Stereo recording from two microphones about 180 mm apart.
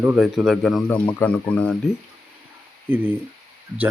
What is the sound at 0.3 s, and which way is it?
Speech, centre (ahead or behind).